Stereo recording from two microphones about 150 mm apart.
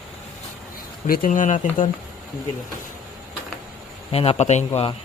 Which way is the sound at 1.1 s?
65° left (ahead or behind).